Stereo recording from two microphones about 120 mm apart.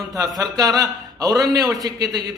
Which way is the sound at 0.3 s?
30° right (ahead or behind).